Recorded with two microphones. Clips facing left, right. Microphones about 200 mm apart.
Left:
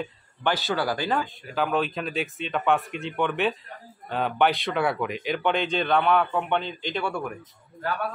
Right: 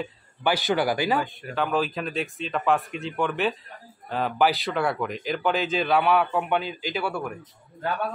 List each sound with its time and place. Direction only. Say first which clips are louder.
0.0 s speech: right 1 dB; 10° right (ahead or behind)
1.5 s speech: even; centre (ahead or behind)
7.8 s a man's voice: right 1 dB; 20° right (ahead or behind)